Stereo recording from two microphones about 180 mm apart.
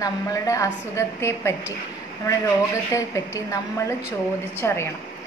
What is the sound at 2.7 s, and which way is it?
A woman's voice, 15° left (ahead or behind).